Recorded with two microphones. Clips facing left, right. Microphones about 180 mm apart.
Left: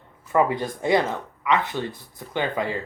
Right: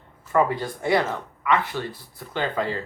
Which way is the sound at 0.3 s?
20° left (ahead or behind).